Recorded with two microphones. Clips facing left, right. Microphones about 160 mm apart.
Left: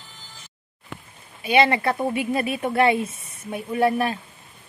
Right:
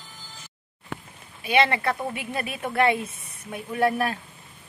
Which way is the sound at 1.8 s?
25° left (ahead or behind).